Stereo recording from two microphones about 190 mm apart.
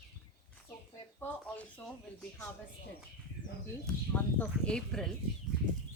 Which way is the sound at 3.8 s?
5° left (ahead or behind).